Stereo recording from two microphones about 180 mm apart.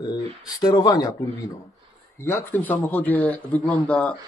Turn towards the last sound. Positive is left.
turn(degrees=10)  # may be behind; listen again after turning